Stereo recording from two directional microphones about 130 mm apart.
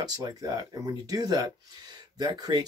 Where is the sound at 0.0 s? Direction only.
30° right (ahead or behind).